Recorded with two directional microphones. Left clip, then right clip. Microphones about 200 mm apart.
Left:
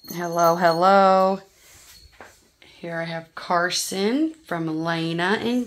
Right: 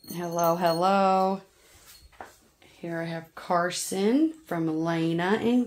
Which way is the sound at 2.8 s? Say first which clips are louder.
Left 4 dB; 20° left (ahead or behind).